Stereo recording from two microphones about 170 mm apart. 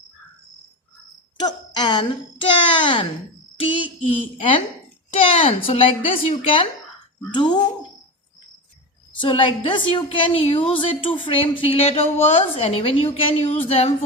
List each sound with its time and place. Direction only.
1.4 s a woman's voice: 25° left (ahead or behind)
4.1 s a woman's voice: 30° left (ahead or behind)
9.1 s a woman's voice: 30° left (ahead or behind)